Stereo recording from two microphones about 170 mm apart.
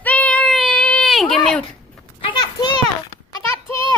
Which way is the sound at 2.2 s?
25° left (ahead or behind).